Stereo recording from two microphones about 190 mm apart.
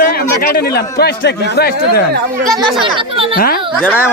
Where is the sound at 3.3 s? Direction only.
50° left (ahead or behind).